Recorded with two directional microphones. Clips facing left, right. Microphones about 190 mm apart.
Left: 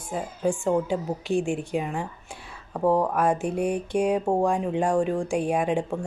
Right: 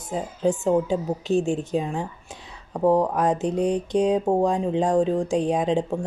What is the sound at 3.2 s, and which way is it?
Speech, 10° left (ahead or behind).